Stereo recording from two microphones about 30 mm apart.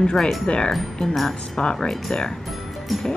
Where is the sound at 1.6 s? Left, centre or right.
Left.